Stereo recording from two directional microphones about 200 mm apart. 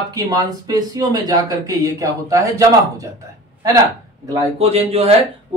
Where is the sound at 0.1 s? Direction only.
20° right (ahead or behind).